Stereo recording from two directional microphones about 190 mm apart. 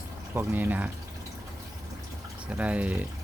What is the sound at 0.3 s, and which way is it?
Speech, 10° right (ahead or behind).